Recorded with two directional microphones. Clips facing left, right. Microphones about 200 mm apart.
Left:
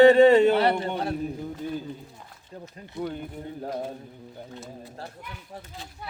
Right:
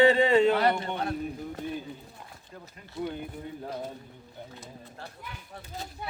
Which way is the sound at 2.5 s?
30° left (ahead or behind).